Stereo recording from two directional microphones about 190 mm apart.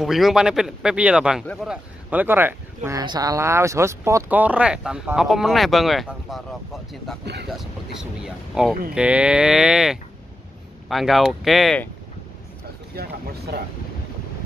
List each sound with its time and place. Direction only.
0.0 s speech: centre (ahead or behind)
12.9 s speech: 55° right (ahead or behind)